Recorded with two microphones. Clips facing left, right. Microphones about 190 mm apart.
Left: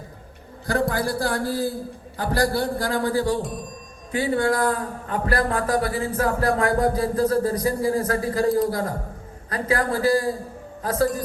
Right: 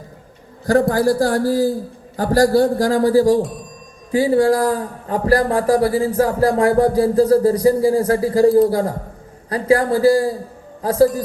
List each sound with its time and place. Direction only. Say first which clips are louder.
0.7 s a man's voice: right 8 dB; 35° right (ahead or behind)
9.5 s a man's voice: right 8 dB; 30° right (ahead or behind)